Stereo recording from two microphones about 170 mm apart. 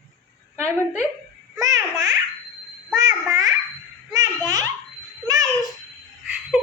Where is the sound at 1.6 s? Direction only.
20° right (ahead or behind).